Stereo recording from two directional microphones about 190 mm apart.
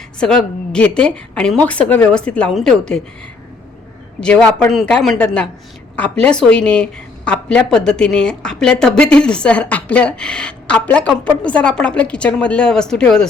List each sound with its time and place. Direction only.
0.2 s a woman's voice: 5° left (ahead or behind)
4.2 s a woman's voice: 5° left (ahead or behind)